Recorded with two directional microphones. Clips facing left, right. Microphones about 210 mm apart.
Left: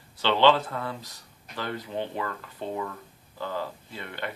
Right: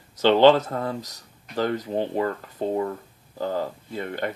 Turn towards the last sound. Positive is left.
turn(degrees=-45)  # may be behind; listen again after turning